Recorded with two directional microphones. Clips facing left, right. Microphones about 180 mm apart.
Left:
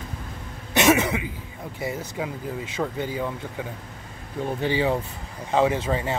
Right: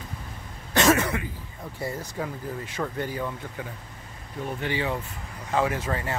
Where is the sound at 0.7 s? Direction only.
15° left (ahead or behind).